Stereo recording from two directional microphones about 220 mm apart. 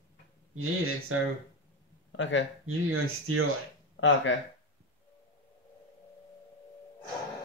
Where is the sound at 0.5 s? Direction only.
70° right (ahead or behind).